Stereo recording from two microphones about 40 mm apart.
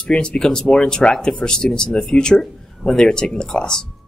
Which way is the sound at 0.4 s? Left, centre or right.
Centre.